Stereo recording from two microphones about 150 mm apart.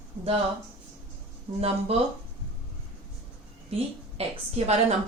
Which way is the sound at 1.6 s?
40° right (ahead or behind).